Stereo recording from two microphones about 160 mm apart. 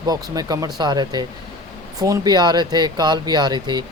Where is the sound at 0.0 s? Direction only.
25° right (ahead or behind).